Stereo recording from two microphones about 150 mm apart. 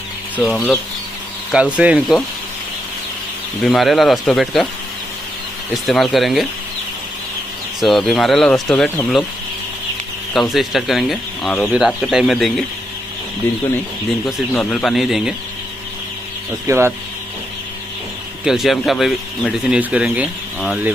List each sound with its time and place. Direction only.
0.4 s speech: centre (ahead or behind)
3.6 s speech: centre (ahead or behind)
5.7 s speech: centre (ahead or behind)
7.8 s speech: centre (ahead or behind)
10.3 s speech: centre (ahead or behind)
14.5 s speech: 5° left (ahead or behind)
16.6 s speech: 15° right (ahead or behind)
18.4 s speech: centre (ahead or behind)